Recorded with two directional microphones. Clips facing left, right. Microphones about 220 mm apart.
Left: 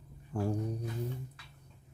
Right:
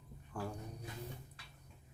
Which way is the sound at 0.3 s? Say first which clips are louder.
Left 8 dB; 25° left (ahead or behind).